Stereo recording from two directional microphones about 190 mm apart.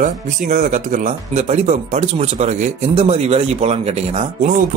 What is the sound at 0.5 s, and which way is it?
Speech, 40° right (ahead or behind).